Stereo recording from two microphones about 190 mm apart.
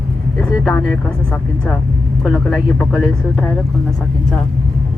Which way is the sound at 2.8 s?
Centre (ahead or behind).